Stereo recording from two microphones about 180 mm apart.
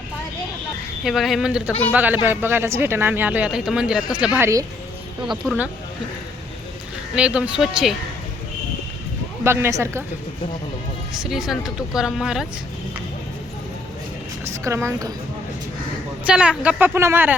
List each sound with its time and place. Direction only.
1.0 s speech: centre (ahead or behind)
4.4 s speech: 15° right (ahead or behind)
7.2 s speech: 5° right (ahead or behind)
9.4 s speech: 15° right (ahead or behind)
11.1 s speech: centre (ahead or behind)
14.5 s a woman's voice: 15° right (ahead or behind)
16.2 s speech: 5° right (ahead or behind)